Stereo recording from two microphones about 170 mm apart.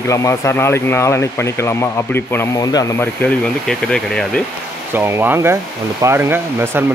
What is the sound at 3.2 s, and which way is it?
Speech, 5° left (ahead or behind).